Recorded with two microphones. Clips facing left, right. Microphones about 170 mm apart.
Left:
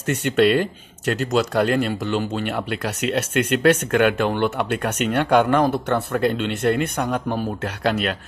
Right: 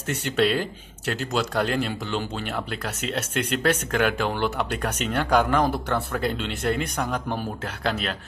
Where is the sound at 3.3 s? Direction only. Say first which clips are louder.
Left 5 dB; 65° left (ahead or behind).